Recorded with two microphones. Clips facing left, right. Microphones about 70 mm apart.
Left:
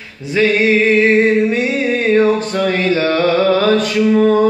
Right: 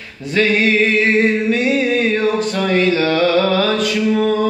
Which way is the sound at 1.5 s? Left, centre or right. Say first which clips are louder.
Even; left.